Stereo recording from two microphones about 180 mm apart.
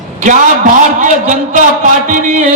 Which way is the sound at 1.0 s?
45° right (ahead or behind).